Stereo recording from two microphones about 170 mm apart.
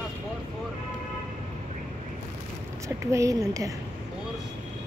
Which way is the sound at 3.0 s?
20° right (ahead or behind).